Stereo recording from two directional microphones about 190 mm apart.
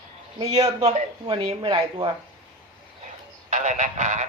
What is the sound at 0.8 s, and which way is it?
Speech, 35° right (ahead or behind).